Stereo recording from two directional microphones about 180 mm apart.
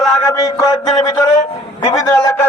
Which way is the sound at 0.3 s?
20° left (ahead or behind).